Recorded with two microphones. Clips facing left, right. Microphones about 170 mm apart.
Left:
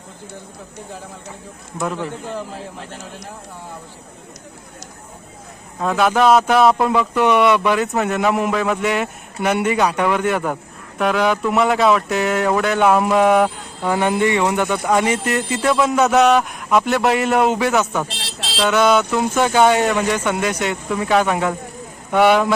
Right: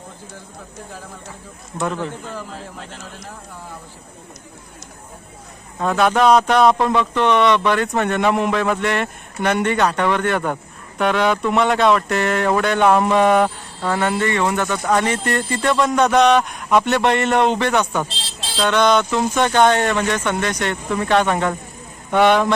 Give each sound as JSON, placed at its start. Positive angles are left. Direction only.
{"t": 1.8, "sound": "speech", "side_deg": 0}
{"t": 5.8, "sound": "speech", "side_deg": 0}
{"t": 18.2, "sound": "speech", "side_deg": 70}
{"t": 18.5, "sound": "speech", "side_deg": 5}